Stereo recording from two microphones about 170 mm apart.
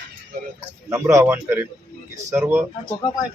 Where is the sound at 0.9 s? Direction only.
15° right (ahead or behind).